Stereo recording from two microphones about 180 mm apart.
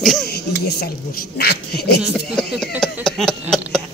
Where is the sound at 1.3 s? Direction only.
60° left (ahead or behind).